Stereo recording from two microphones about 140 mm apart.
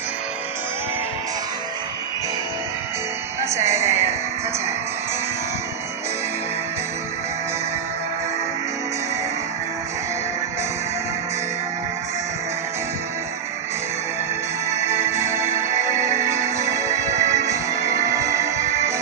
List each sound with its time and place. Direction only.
3.5 s a woman's voice: 20° right (ahead or behind)
14.8 s music: 20° right (ahead or behind)